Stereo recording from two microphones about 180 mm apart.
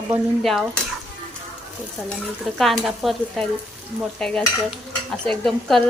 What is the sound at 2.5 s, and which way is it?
A woman's voice, centre (ahead or behind).